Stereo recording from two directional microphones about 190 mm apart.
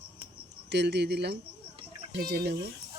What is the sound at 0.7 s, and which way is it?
Speech, 65° right (ahead or behind).